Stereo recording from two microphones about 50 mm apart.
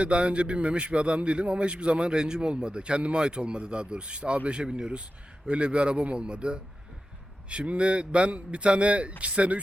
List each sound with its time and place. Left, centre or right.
0.0 s a man's voice: right